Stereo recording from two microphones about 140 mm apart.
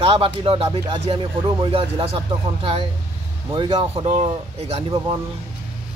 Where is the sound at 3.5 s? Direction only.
35° right (ahead or behind).